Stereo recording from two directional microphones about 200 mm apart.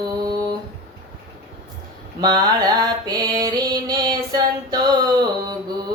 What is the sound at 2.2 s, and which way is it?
Mantra, 20° right (ahead or behind).